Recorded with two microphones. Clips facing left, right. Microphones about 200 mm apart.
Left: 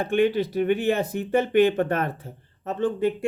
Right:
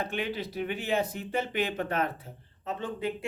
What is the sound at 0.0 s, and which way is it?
Speech, 50° left (ahead or behind).